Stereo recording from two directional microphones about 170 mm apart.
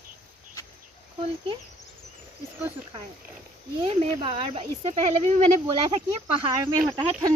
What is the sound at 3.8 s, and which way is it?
Speech, 35° right (ahead or behind).